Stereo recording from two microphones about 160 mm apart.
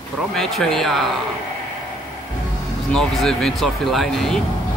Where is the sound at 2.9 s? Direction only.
5° left (ahead or behind).